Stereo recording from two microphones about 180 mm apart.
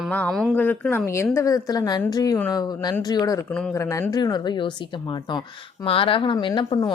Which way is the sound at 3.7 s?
15° left (ahead or behind).